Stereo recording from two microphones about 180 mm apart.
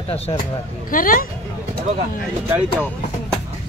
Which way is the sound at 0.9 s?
50° left (ahead or behind).